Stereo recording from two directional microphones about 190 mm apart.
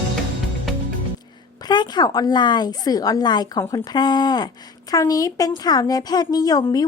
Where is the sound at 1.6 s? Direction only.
20° left (ahead or behind).